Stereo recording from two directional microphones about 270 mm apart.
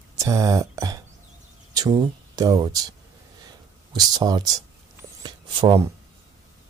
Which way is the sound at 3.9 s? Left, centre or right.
Centre.